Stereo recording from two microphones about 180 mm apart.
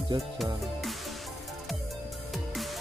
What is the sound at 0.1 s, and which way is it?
Speech, 25° right (ahead or behind).